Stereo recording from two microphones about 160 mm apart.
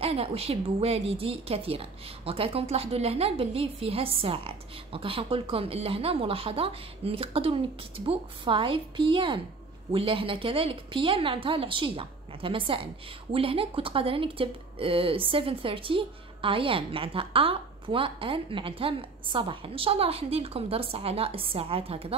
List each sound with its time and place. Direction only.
0.0 s a woman's voice: 35° right (ahead or behind)